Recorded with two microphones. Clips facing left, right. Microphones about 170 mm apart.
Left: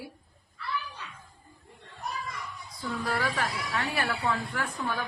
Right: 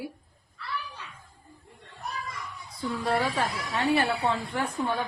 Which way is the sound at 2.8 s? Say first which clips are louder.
Right 4 dB; 25° right (ahead or behind).